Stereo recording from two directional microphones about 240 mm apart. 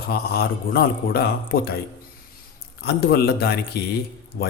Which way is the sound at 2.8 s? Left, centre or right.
Left.